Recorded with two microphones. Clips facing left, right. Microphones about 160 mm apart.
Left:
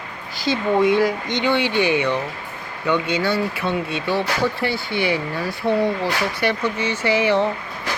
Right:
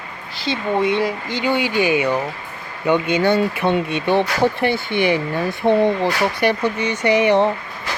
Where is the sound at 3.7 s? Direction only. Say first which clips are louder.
Right 5 dB; 20° right (ahead or behind).